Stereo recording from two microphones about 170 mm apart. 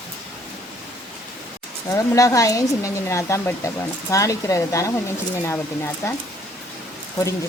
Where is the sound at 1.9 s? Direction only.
15° left (ahead or behind).